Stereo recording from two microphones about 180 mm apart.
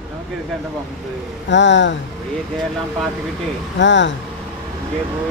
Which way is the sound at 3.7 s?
85° left.